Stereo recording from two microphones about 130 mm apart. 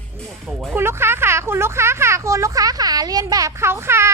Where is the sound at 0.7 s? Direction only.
20° right (ahead or behind).